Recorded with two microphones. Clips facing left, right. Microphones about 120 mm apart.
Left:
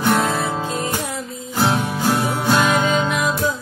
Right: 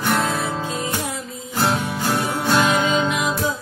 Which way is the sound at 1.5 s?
Centre (ahead or behind).